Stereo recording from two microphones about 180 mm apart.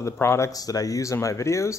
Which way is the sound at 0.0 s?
15° left (ahead or behind).